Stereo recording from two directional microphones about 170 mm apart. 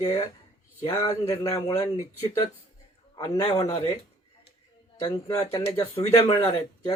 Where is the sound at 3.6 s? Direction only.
35° left (ahead or behind).